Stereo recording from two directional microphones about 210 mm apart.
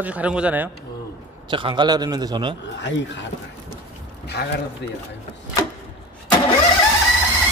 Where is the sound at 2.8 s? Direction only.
60° left (ahead or behind).